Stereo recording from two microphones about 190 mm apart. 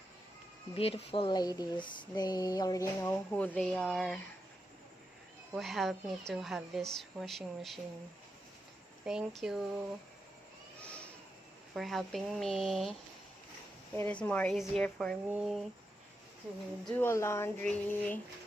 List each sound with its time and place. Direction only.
0.8 s a sound: 30° left (ahead or behind); by 4.2 s 5° left (ahead or behind)
5.5 s speech: centre (ahead or behind)
9.0 s speech: 5° right (ahead or behind)
11.7 s speech: centre (ahead or behind)
16.8 s speech: 10° left (ahead or behind)